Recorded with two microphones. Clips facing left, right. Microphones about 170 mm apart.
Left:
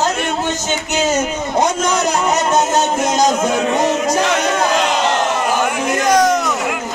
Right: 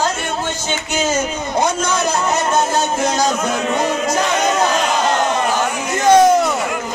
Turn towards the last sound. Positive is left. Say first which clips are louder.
# right 3 dB
turn(degrees=-30)  # may be behind; listen again after turning